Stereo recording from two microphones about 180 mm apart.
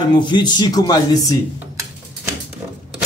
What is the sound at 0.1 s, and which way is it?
Speech, 25° left (ahead or behind).